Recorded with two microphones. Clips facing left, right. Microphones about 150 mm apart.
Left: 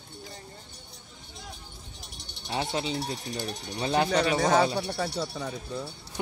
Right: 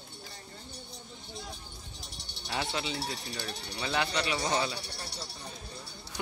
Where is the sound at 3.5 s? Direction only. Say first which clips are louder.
Left 6 dB; 45° left (ahead or behind).